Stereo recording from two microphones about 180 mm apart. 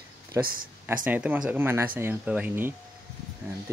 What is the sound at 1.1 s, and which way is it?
Speech, 5° right (ahead or behind).